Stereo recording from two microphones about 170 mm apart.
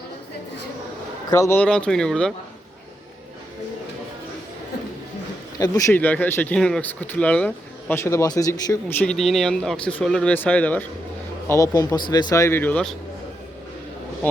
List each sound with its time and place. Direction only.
1.3 s speech: 15° left (ahead or behind)
5.5 s speech: 20° left (ahead or behind)
11.4 s speech: 20° left (ahead or behind)